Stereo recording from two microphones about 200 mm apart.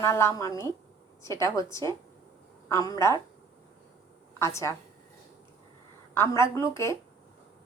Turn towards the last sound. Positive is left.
turn(degrees=15)  # may be behind; listen again after turning